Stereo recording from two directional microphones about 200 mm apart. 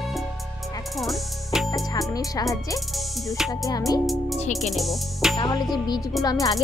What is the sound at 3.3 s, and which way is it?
Music, centre (ahead or behind).